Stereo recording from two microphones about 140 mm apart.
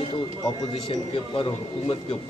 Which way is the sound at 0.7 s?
40° left (ahead or behind).